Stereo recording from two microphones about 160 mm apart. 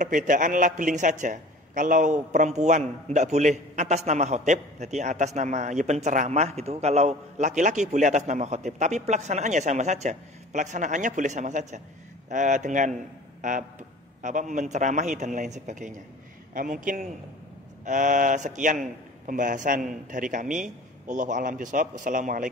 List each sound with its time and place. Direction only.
0.0 s a man's voice: 55° right (ahead or behind)